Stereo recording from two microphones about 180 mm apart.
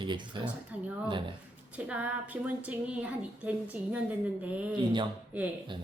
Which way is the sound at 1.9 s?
10° right (ahead or behind).